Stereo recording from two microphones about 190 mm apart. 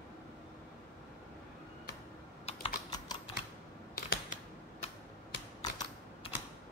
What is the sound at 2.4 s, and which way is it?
Typing, 30° left (ahead or behind).